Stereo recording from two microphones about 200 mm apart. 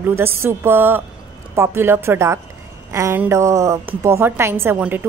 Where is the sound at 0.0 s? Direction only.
10° right (ahead or behind).